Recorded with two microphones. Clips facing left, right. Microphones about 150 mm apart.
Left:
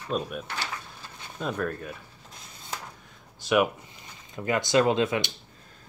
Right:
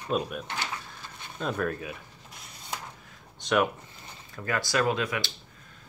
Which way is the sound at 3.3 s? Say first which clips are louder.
Left 2 dB; 5° left (ahead or behind).